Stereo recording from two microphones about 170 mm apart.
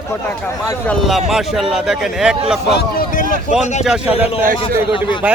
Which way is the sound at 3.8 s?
5° right (ahead or behind).